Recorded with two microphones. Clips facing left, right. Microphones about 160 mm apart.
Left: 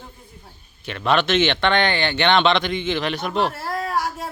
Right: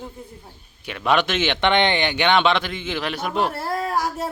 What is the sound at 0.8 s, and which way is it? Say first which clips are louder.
Speech: left 1 dB; 10° right (ahead or behind).